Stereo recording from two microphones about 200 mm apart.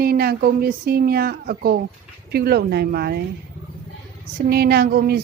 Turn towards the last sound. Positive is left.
turn(degrees=-50)  # may be behind; listen again after turning